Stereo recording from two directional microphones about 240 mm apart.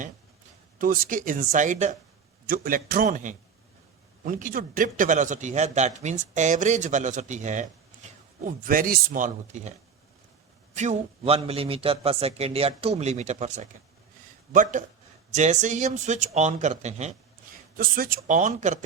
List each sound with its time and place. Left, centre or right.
0.8 s a man's voice: right
10.8 s a man's voice: right